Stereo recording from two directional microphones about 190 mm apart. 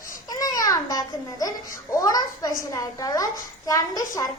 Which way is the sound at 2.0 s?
20° left (ahead or behind).